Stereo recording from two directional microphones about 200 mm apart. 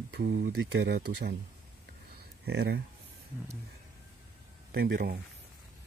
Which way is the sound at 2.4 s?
55° right (ahead or behind).